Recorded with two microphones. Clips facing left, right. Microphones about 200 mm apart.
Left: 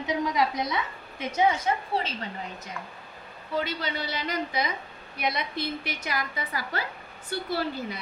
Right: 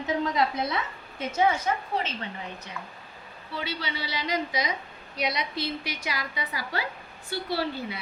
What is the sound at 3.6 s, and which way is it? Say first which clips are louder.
A woman's voice: left 3 dB; 45° left (ahead or behind).